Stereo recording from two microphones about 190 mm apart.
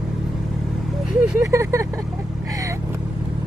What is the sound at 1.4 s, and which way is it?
Vehicle, 15° right (ahead or behind).